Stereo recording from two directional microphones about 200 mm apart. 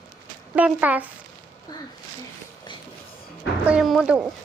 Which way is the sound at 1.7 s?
20° left (ahead or behind).